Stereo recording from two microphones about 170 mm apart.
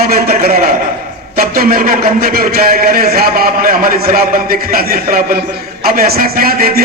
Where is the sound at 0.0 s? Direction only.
60° right (ahead or behind).